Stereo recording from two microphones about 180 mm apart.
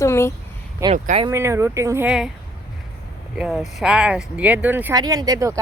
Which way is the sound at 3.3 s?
5° right (ahead or behind).